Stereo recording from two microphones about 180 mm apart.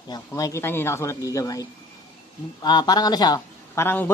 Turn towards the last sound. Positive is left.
turn(degrees=10)  # may be behind; listen again after turning